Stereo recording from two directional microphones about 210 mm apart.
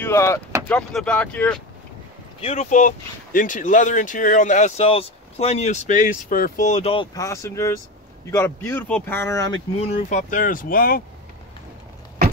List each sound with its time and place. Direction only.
0.0 s speech: 15° left (ahead or behind)
2.4 s speech: 30° left (ahead or behind)
7.2 s speech: 15° left (ahead or behind)
9.8 s speech: 35° left (ahead or behind)